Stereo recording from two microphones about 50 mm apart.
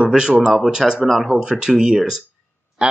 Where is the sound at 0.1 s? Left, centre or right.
Centre.